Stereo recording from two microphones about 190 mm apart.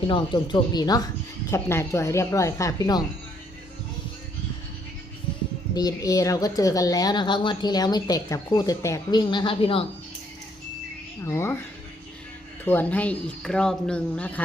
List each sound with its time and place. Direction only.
0.1 s a woman's voice: 25° left (ahead or behind)
5.7 s a woman's voice: 20° left (ahead or behind)
11.3 s speech: 15° left (ahead or behind)
12.6 s speech: 10° left (ahead or behind)